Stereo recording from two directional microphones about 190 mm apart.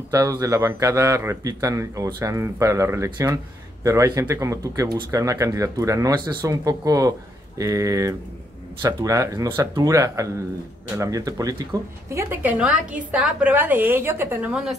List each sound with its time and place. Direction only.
0.1 s a man's voice: 15° right (ahead or behind)